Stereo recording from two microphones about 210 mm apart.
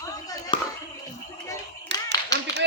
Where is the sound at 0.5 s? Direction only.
25° left (ahead or behind).